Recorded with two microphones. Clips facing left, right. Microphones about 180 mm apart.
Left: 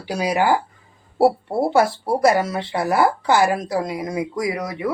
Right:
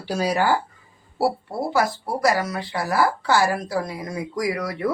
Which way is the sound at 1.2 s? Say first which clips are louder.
Left 6 dB; 25° left (ahead or behind).